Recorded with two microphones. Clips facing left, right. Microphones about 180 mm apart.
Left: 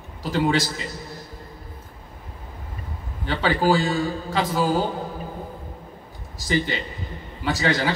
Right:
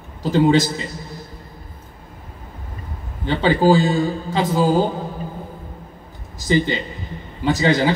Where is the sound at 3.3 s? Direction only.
20° right (ahead or behind).